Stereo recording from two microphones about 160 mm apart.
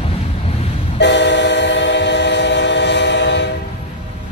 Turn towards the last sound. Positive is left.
turn(degrees=90)